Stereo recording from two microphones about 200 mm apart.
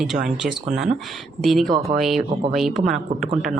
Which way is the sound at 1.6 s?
20° right (ahead or behind).